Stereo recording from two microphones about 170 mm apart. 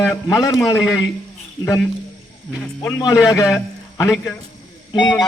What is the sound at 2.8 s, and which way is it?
Speech, 15° left (ahead or behind).